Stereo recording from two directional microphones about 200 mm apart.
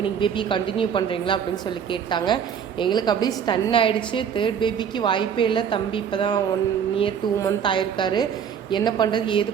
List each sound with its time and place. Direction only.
0.0 s a woman's voice: 25° left (ahead or behind)
7.3 s a woman's voice: 20° left (ahead or behind)